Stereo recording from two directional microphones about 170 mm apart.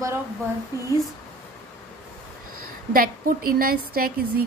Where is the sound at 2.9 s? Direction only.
55° right (ahead or behind).